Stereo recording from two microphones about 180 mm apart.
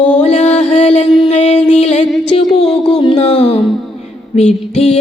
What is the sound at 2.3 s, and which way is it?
Mantra, 30° left (ahead or behind).